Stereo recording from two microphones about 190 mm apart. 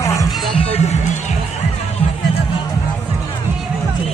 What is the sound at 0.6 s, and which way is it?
Music, 35° left (ahead or behind).